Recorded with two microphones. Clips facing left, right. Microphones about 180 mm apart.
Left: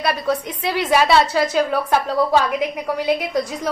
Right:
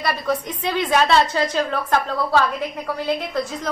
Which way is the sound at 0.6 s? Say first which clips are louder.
Left 1 dB; 10° left (ahead or behind).